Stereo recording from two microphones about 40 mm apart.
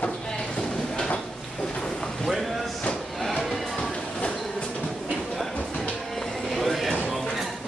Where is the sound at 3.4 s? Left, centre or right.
Centre.